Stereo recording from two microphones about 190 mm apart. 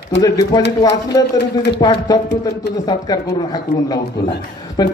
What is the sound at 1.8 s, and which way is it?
A man's voice, 20° left (ahead or behind).